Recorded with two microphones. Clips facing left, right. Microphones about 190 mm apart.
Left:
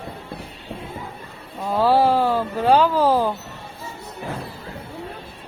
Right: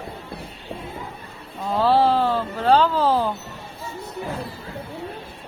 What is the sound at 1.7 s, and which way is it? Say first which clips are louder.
Speech: left 1 dB; 10° left (ahead or behind).